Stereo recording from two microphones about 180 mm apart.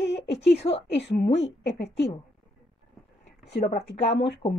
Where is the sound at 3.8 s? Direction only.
75° left (ahead or behind).